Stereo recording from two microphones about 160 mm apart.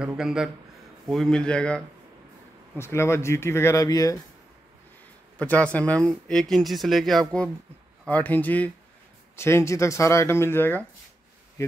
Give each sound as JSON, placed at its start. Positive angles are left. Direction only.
{"t": 0.0, "sound": "speech", "side_deg": -5}
{"t": 2.8, "sound": "speech", "side_deg": 15}
{"t": 5.4, "sound": "speech", "side_deg": 10}